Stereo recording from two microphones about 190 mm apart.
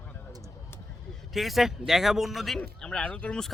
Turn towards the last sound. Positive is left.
turn(degrees=5)  # may be behind; listen again after turning